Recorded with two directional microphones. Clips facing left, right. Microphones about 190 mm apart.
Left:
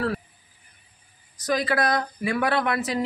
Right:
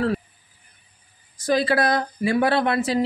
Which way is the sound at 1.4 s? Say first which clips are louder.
Right 4 dB; 30° right (ahead or behind).